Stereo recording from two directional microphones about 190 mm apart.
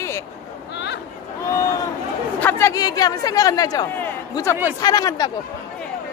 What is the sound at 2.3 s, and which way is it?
A man's voice, 10° left (ahead or behind).